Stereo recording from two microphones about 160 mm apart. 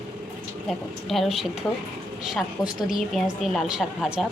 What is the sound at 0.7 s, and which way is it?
A woman's voice, centre (ahead or behind).